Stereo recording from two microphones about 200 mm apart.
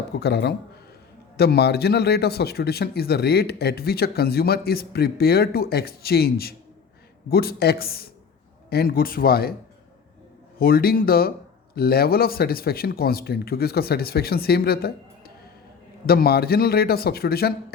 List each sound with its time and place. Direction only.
0.2 s speech: 55° left (ahead or behind)
10.6 s speech: 50° left (ahead or behind)